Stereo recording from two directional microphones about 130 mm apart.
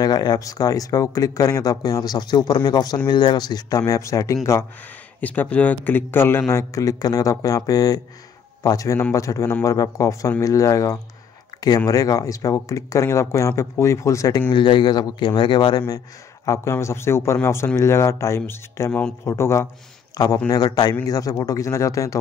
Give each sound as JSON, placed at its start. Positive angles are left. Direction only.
{"t": 0.0, "sound": "speech", "side_deg": 30}
{"t": 14.5, "sound": "speech", "side_deg": 35}
{"t": 16.4, "sound": "speech", "side_deg": 20}